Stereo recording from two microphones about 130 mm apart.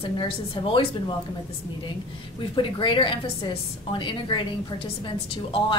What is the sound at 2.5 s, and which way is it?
A woman's voice, 40° left (ahead or behind).